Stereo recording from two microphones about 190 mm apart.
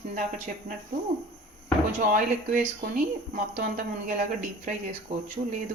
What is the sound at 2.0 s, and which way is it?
Speech, 45° right (ahead or behind).